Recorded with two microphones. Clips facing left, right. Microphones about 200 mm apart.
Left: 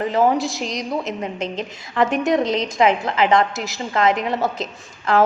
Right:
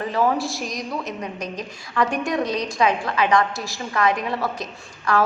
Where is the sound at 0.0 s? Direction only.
20° left (ahead or behind).